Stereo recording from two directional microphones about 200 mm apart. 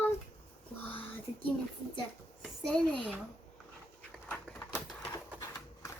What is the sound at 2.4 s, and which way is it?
Speech, 5° left (ahead or behind).